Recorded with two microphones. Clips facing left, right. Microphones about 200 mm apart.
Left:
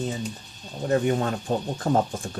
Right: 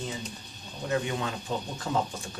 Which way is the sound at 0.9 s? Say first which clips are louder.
Left 7 dB; 45° left (ahead or behind).